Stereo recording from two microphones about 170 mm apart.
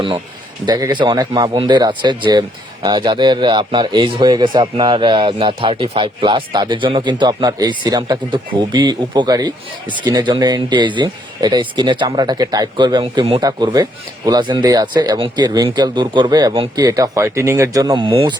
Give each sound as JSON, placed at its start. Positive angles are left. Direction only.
{"t": 0.6, "sound": "speech", "side_deg": -25}